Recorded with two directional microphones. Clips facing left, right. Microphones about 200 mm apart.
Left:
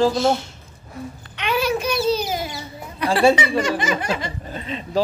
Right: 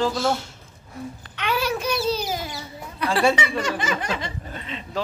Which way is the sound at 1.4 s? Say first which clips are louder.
Left 3 dB; 15° left (ahead or behind).